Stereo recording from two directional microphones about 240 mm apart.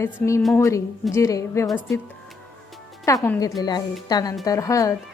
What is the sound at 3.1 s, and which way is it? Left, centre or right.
A woman's voice, centre.